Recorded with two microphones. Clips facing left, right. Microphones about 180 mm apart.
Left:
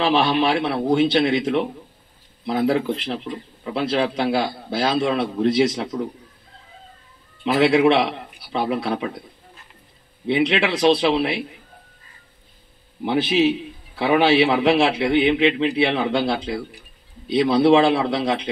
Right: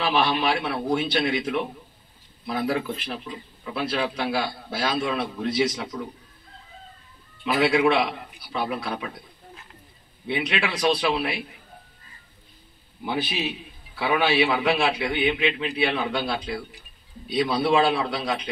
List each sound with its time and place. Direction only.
0.0 s a man's voice: 30° left (ahead or behind)
7.5 s a man's voice: 30° left (ahead or behind)
10.2 s a man's voice: 25° left (ahead or behind)
13.0 s a man's voice: 25° left (ahead or behind)